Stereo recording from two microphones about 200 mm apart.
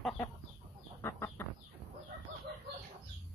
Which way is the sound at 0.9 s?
10° left (ahead or behind).